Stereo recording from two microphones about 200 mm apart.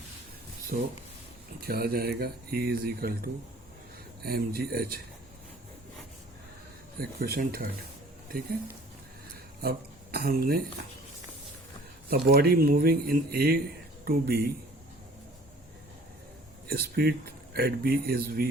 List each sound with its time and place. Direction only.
0.7 s speech: 50° right (ahead or behind)
7.2 s speech: 50° right (ahead or behind)
9.6 s speech: 50° right (ahead or behind)
12.1 s speech: 50° right (ahead or behind)
16.6 s speech: 50° right (ahead or behind)